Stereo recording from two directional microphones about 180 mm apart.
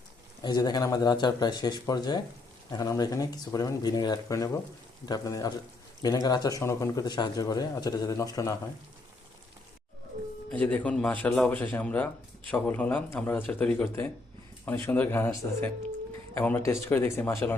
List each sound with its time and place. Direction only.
0.4 s a man's voice: 20° left (ahead or behind)
10.5 s a man's voice: 10° left (ahead or behind)